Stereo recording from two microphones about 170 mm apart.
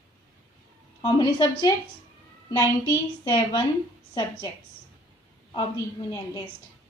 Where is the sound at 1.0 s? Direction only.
30° left (ahead or behind).